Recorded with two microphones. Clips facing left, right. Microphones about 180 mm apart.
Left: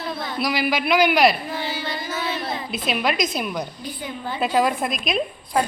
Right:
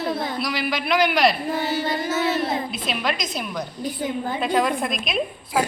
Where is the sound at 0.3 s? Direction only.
5° left (ahead or behind).